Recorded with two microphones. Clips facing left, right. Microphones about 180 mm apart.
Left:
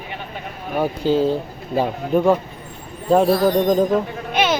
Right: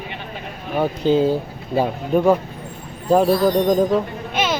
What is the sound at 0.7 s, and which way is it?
Speech, 10° left (ahead or behind).